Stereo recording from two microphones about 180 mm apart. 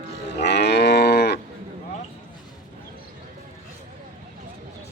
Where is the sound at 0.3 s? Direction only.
75° left (ahead or behind).